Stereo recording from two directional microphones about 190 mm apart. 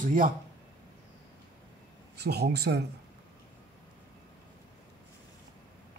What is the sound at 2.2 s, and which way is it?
Speech, 60° right (ahead or behind).